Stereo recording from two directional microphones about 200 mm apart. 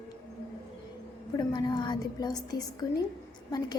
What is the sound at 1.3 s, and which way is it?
A woman's voice, 20° left (ahead or behind).